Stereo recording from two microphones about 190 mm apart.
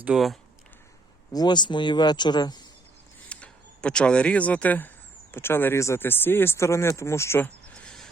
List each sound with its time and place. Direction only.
0.0 s speech: centre (ahead or behind)
1.3 s speech: 20° left (ahead or behind)
3.2 s speech: 5° left (ahead or behind)